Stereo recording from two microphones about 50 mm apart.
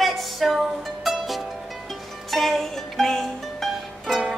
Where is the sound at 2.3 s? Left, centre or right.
Centre.